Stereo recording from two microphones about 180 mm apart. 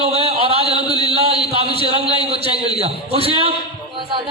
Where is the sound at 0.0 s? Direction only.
35° right (ahead or behind).